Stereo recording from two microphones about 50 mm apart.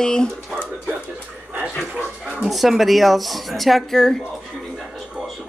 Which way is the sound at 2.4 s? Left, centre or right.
Centre.